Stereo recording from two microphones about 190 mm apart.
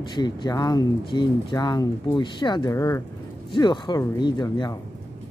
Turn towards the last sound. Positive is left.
turn(degrees=20)  # may be behind; listen again after turning